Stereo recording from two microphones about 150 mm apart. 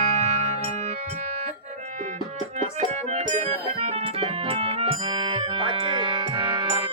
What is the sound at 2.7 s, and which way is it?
Music, 50° right (ahead or behind).